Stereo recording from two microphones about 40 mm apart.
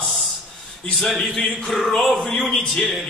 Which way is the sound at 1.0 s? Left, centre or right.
Centre.